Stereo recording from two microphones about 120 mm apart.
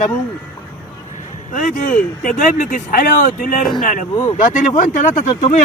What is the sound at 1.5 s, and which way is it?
Speech, 90° left.